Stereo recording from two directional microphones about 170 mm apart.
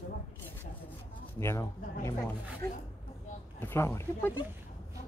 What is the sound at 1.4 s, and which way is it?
Speech, 15° left (ahead or behind).